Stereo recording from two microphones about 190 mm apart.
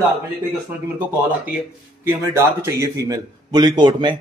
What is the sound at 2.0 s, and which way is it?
A man's voice, 15° right (ahead or behind).